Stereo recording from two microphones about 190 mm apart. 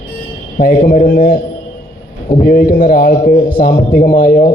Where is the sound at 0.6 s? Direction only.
50° left (ahead or behind).